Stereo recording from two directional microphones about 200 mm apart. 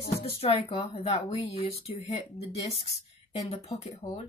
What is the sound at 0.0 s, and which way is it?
Speech, 30° left (ahead or behind).